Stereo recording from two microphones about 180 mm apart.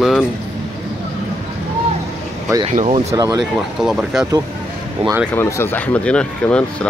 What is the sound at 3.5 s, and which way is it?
Speech, centre (ahead or behind).